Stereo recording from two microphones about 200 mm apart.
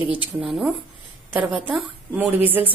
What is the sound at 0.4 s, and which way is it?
A woman's voice, centre (ahead or behind).